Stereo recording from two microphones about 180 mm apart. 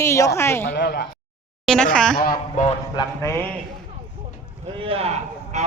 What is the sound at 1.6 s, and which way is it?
Speech, 5° left (ahead or behind).